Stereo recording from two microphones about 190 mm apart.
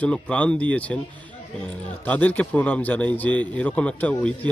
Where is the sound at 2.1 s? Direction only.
10° left (ahead or behind).